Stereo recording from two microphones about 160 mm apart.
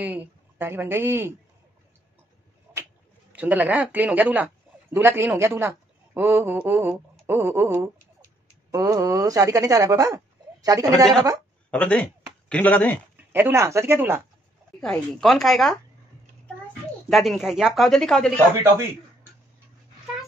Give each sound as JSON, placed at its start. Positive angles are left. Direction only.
{"t": 0.0, "sound": "speech", "side_deg": -10}
{"t": 3.3, "sound": "a woman's voice", "side_deg": -10}
{"t": 8.7, "sound": "speech", "side_deg": -20}
{"t": 11.7, "sound": "speech", "side_deg": 10}
{"t": 13.3, "sound": "speech", "side_deg": -15}
{"t": 14.8, "sound": "speech", "side_deg": 5}
{"t": 17.1, "sound": "speech", "side_deg": 0}